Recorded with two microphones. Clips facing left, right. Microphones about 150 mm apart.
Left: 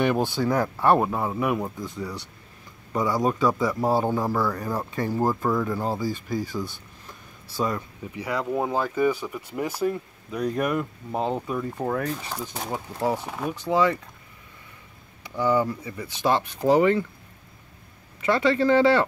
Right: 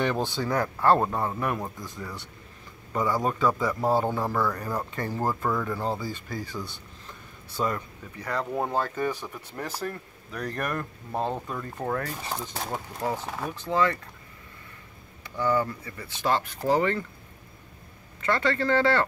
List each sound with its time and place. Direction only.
0.0 s speech: 10° left (ahead or behind)
12.0 s speech: 10° right (ahead or behind)
12.4 s speech: 15° left (ahead or behind)
15.2 s speech: 15° left (ahead or behind)
18.2 s speech: 15° left (ahead or behind)